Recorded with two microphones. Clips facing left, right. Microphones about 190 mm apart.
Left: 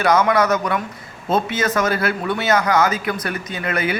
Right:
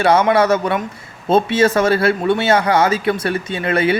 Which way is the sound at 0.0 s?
25° right (ahead or behind).